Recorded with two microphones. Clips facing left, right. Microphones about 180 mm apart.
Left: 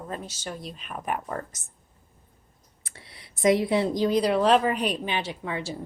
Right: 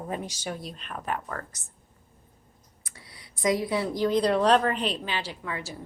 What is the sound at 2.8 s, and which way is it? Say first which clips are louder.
Speech: left 1 dB; 25° left (ahead or behind).